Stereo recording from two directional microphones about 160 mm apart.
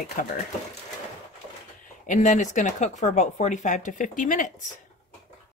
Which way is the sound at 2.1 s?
50° left (ahead or behind).